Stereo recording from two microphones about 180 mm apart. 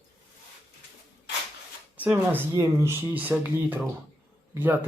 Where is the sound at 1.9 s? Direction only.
10° right (ahead or behind).